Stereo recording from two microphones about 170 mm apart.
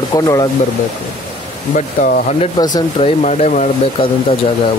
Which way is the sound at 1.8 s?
50° left (ahead or behind).